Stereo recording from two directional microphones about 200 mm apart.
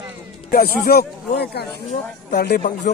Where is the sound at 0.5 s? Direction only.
50° left (ahead or behind).